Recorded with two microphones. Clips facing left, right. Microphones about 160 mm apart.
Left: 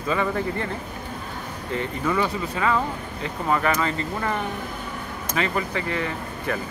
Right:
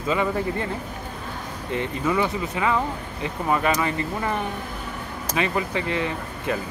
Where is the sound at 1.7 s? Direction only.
15° right (ahead or behind).